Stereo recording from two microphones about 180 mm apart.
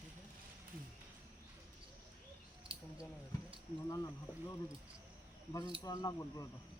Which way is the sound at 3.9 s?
20° left (ahead or behind).